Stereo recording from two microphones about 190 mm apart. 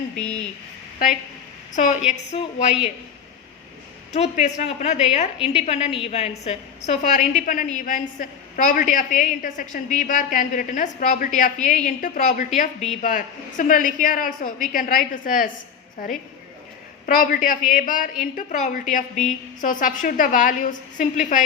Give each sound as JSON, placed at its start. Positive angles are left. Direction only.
{"t": 1.7, "sound": "a woman's voice", "side_deg": 40}
{"t": 4.1, "sound": "a woman's voice", "side_deg": 40}
{"t": 17.2, "sound": "a woman's voice", "side_deg": 45}